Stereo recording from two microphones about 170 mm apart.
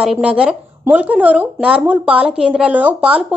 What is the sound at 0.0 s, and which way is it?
Speech, 5° right (ahead or behind).